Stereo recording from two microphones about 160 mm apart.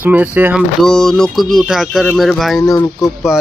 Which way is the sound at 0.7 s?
5° left (ahead or behind).